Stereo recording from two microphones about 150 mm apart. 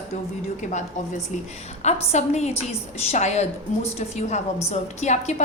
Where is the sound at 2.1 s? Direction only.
50° left (ahead or behind).